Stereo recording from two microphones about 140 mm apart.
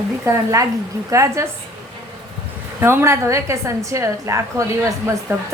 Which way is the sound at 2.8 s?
20° right (ahead or behind).